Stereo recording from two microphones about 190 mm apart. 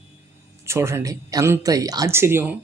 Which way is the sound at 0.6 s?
15° right (ahead or behind).